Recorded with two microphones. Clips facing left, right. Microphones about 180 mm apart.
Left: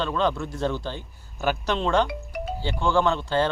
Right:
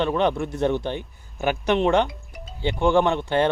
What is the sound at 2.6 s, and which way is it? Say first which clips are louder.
Speech: right 4 dB; 20° right (ahead or behind).